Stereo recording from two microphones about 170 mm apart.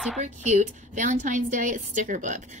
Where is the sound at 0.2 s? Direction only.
45° right (ahead or behind).